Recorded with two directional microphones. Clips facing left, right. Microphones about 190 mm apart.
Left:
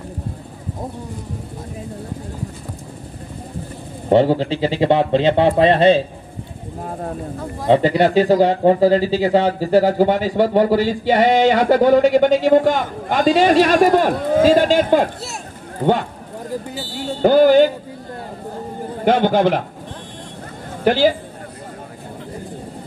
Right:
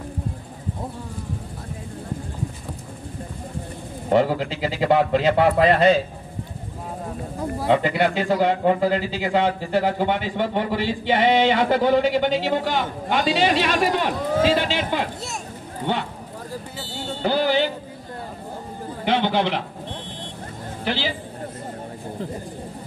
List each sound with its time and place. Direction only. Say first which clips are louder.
4.1 s speech: left 5 dB; 30° left (ahead or behind)
7.6 s a man's voice: left 6 dB; 35° left (ahead or behind)
17.2 s a man's voice: left 10 dB; 45° left (ahead or behind)
19.0 s a man's voice: left 7 dB; 45° left (ahead or behind)
20.8 s a man's voice: left 12 dB; 45° left (ahead or behind)